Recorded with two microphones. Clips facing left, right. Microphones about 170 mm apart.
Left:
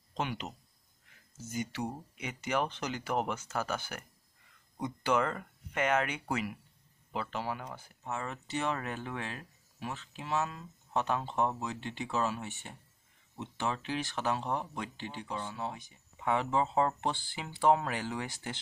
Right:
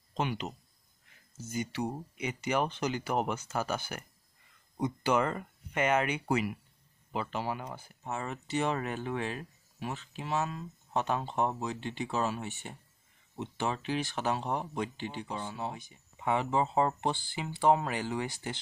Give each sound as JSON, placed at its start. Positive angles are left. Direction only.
{"t": 0.1, "sound": "speech", "side_deg": -5}
{"t": 1.5, "sound": "speech", "side_deg": 0}